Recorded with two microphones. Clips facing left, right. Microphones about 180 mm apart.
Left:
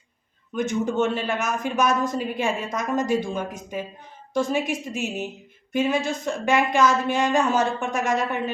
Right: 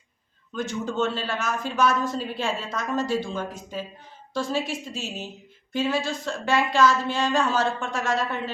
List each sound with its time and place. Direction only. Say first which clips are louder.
0.5 s speech: left 4 dB; 20° left (ahead or behind)